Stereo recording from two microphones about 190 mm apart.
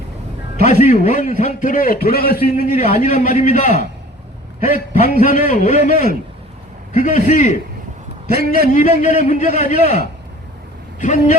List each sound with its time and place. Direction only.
0.7 s a man's voice: 40° left (ahead or behind)
8.3 s a man's voice: 55° right (ahead or behind)
8.7 s a man's voice: 40° left (ahead or behind)
11.0 s a man's voice: 40° left (ahead or behind)